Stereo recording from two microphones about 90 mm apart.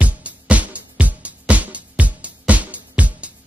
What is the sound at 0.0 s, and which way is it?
Music, 15° right (ahead or behind).